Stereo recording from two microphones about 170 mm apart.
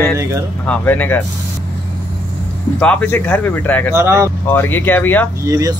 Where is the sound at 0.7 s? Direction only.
10° left (ahead or behind).